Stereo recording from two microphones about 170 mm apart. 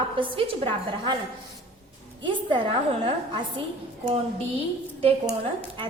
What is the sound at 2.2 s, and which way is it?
A woman's voice, 30° right (ahead or behind).